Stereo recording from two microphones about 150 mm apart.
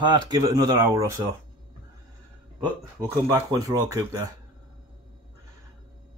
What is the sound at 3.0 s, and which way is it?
Speech, 25° right (ahead or behind).